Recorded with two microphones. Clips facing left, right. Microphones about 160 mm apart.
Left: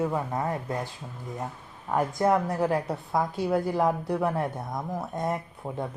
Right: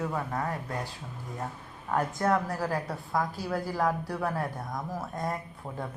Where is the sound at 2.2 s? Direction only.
15° left (ahead or behind).